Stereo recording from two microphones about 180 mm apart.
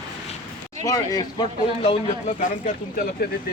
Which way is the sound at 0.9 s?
20° left (ahead or behind).